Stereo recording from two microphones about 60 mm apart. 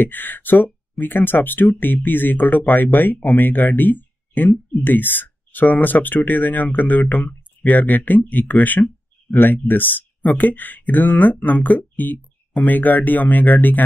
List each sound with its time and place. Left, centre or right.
0.0 s speech: left